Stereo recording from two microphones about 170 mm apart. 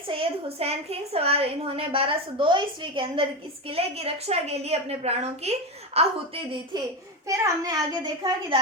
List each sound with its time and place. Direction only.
0.1 s a woman's voice: 35° right (ahead or behind)
7.3 s a child's voice: 20° right (ahead or behind)